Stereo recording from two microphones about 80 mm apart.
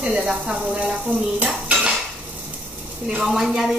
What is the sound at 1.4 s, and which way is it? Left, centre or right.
Cutlery, centre.